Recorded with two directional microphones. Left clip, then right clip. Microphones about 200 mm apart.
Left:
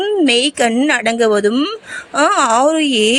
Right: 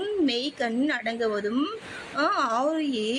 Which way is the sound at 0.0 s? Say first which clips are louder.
Left 13 dB; 30° left (ahead or behind).